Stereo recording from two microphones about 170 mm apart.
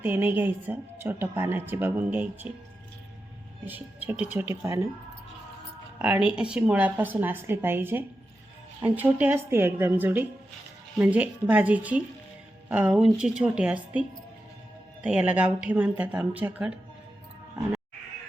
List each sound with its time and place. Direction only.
0.0 s a woman's voice: 15° right (ahead or behind)
3.7 s a woman's voice: 10° right (ahead or behind)
6.0 s a woman's voice: 5° right (ahead or behind)
15.0 s a woman's voice: 5° right (ahead or behind)